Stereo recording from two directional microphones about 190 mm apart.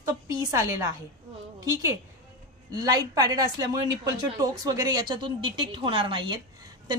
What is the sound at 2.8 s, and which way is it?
Speech, 20° right (ahead or behind).